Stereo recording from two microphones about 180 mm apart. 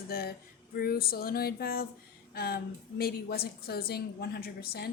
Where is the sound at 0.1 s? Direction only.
55° left (ahead or behind).